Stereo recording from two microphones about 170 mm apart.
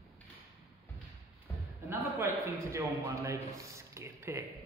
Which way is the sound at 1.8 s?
15° right (ahead or behind).